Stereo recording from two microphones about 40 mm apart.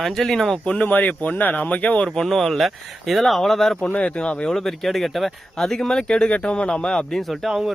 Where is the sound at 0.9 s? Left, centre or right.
Left.